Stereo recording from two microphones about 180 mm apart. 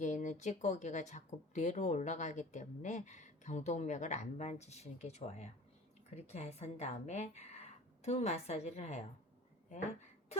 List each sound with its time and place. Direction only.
0.0 s speech: 45° left (ahead or behind)